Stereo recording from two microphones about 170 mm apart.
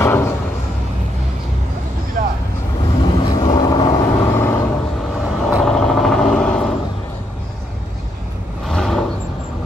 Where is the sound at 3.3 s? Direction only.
25° left (ahead or behind).